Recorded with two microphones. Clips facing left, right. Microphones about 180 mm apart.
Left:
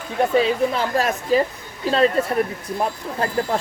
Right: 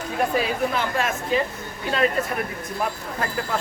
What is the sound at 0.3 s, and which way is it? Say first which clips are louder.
A woman's voice: left 8 dB; 30° left (ahead or behind).